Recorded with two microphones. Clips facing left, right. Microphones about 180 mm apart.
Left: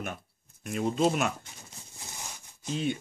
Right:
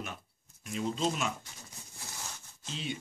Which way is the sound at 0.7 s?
55° left (ahead or behind).